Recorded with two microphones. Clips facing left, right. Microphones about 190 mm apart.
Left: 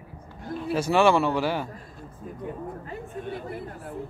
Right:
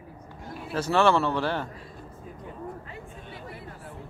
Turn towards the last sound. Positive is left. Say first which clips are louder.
# left 8 dB
turn(degrees=50)  # may be behind; listen again after turning